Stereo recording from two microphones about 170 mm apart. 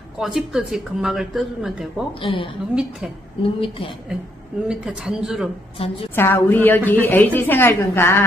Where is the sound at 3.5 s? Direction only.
30° left (ahead or behind).